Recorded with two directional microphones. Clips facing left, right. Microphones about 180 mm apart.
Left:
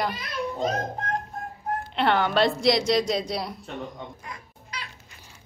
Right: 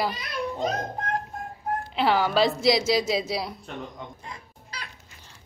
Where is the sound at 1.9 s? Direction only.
5° right (ahead or behind).